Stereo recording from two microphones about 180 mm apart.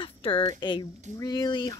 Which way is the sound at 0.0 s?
30° left (ahead or behind).